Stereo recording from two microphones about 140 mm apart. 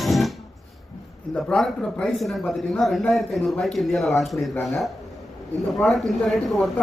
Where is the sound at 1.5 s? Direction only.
5° left (ahead or behind).